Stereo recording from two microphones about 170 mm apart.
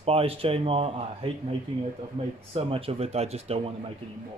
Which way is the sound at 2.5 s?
35° right (ahead or behind).